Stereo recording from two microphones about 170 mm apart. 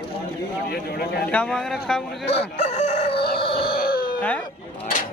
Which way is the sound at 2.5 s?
40° left (ahead or behind).